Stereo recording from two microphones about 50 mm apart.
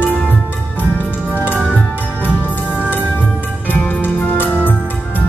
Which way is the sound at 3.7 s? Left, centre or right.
Left.